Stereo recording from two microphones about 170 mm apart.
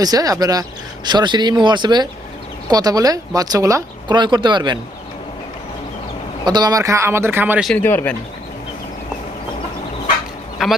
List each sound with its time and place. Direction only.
0.0 s speech: 20° right (ahead or behind)
6.4 s speech: 25° right (ahead or behind)
7.7 s speech: 10° left (ahead or behind)
10.6 s speech: centre (ahead or behind)